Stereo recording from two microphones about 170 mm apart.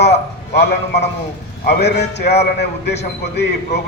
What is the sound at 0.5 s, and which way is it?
A man's voice, 80° left.